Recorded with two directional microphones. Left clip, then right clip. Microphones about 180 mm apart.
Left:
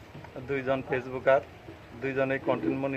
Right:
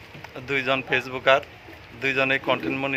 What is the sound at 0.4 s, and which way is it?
A man's voice, 20° right (ahead or behind).